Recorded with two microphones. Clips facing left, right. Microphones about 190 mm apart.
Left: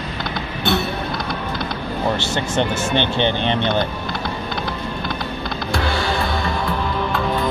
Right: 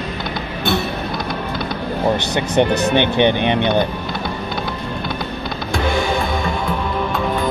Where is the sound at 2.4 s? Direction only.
20° right (ahead or behind).